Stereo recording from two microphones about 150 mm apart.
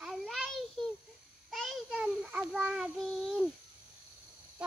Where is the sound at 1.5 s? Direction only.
Centre (ahead or behind).